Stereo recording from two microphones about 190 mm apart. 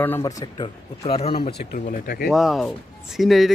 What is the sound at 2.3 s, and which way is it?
Speech, centre (ahead or behind).